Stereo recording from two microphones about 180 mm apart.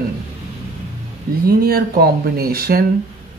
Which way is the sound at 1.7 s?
55° right (ahead or behind).